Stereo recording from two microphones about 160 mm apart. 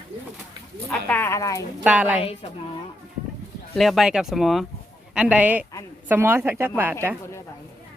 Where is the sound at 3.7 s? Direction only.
Centre (ahead or behind).